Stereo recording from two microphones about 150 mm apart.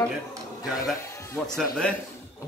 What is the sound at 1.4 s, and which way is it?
Speech, 15° left (ahead or behind).